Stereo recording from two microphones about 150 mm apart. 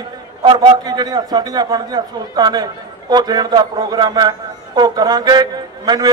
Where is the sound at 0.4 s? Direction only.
25° right (ahead or behind).